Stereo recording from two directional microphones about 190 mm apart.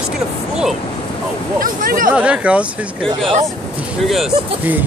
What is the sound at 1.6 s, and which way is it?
Speech, 45° right (ahead or behind).